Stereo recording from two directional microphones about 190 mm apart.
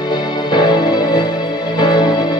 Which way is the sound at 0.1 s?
20° left (ahead or behind).